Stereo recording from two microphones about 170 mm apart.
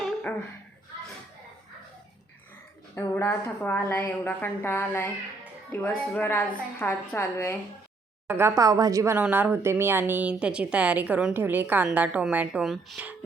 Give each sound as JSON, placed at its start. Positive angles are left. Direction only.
{"t": 0.0, "sound": "a sound", "side_deg": 10}
{"t": 2.9, "sound": "a woman's voice", "side_deg": 15}
{"t": 6.1, "sound": "a woman's voice", "side_deg": 10}
{"t": 8.3, "sound": "a woman's voice", "side_deg": -15}